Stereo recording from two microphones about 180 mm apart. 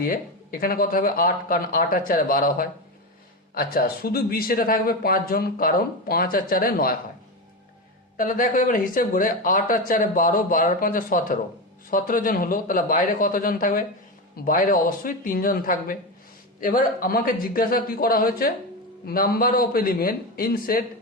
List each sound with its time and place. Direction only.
0.6 s speech: 55° left (ahead or behind)
8.1 s speech: 50° left (ahead or behind)